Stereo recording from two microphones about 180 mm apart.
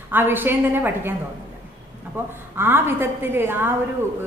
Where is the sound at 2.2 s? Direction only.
10° right (ahead or behind).